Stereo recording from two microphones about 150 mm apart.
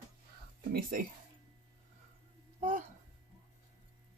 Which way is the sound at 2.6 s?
55° right (ahead or behind).